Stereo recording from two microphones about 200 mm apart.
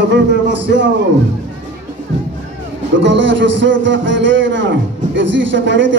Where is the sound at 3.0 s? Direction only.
65° right (ahead or behind).